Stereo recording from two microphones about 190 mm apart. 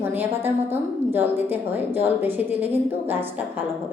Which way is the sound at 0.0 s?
10° right (ahead or behind).